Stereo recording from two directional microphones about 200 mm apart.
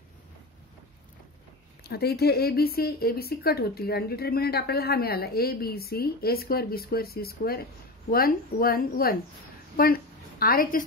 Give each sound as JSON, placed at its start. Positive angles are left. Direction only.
{"t": 1.8, "sound": "speech", "side_deg": 50}